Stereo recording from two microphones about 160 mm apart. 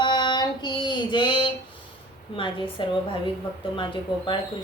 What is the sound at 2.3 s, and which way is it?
Speech, 30° left (ahead or behind).